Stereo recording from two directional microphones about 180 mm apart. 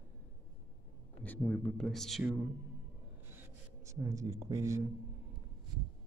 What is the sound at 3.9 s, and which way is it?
Speech, 15° right (ahead or behind).